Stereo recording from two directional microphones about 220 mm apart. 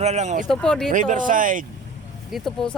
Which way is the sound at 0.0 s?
30° right (ahead or behind).